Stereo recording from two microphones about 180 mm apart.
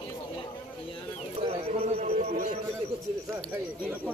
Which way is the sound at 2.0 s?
35° right (ahead or behind).